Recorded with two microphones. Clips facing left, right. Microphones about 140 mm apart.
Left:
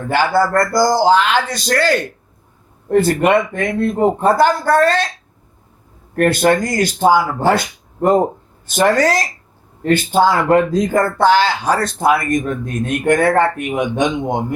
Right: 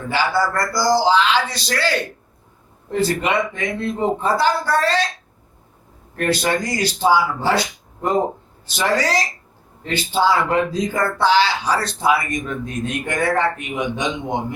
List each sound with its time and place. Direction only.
0.1 s speech: 50° left (ahead or behind)
6.1 s speech: 50° left (ahead or behind)